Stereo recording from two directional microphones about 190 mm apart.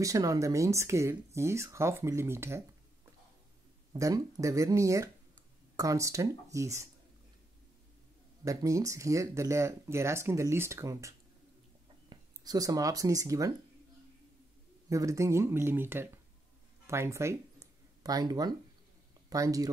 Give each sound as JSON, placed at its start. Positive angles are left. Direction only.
{"t": 0.0, "sound": "speech", "side_deg": -15}
{"t": 3.9, "sound": "speech", "side_deg": -20}
{"t": 8.5, "sound": "speech", "side_deg": -15}
{"t": 14.9, "sound": "speech", "side_deg": -15}